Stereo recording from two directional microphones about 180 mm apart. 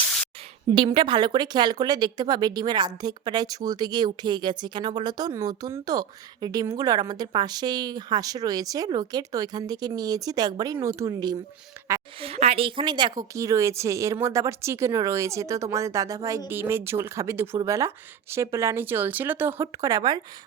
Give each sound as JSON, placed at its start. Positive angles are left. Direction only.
{"t": 0.7, "sound": "a woman's voice", "side_deg": -25}
{"t": 12.2, "sound": "a woman's voice", "side_deg": -35}